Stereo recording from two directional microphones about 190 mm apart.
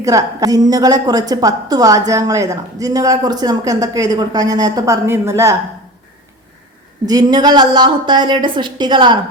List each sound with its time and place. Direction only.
0.0 s a woman's voice: 15° right (ahead or behind)
7.0 s a woman's voice: 20° right (ahead or behind)